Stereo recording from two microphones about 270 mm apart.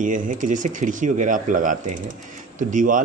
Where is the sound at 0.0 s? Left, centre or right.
Right.